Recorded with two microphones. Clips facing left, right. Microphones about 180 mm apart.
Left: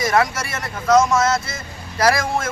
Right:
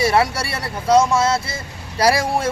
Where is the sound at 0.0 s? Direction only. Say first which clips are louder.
Right 1 dB; 30° right (ahead or behind).